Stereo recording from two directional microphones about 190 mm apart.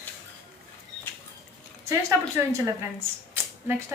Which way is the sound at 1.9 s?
15° right (ahead or behind).